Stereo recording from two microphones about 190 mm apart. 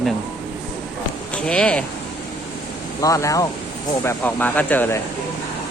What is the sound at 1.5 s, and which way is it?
Speech, 5° left (ahead or behind).